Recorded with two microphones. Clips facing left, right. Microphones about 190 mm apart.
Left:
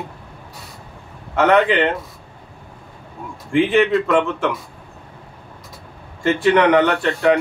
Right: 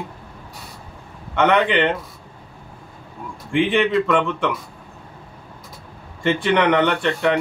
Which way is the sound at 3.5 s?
Centre (ahead or behind).